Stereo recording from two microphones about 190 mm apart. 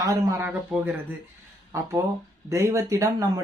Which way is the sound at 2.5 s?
15° right (ahead or behind).